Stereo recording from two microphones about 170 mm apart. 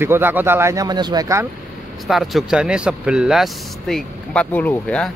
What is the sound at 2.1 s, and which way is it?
Speech, centre (ahead or behind).